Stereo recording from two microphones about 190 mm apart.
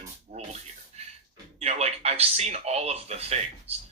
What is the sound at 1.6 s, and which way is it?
Speech, 35° right (ahead or behind).